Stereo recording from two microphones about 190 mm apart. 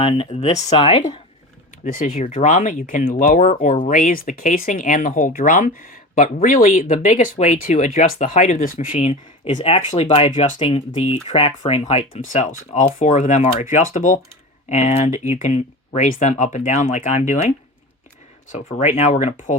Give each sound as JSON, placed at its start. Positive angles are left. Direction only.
{"t": 0.0, "sound": "speech", "side_deg": 30}
{"t": 1.8, "sound": "speech", "side_deg": 45}
{"t": 18.9, "sound": "speech", "side_deg": 35}